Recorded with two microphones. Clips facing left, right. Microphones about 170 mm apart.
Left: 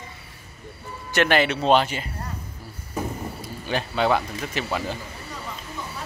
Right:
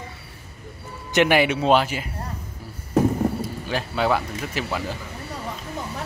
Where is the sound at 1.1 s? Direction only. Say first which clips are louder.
Right 2 dB; 10° right (ahead or behind).